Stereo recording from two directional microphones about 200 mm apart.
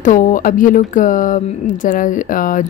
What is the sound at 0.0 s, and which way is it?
A woman's voice, 40° left (ahead or behind).